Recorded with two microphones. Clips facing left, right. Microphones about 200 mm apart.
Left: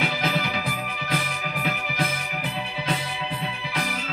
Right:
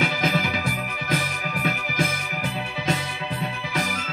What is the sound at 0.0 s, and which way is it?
Music, 45° right (ahead or behind).